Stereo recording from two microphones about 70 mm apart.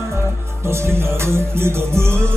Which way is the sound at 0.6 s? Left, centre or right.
Right.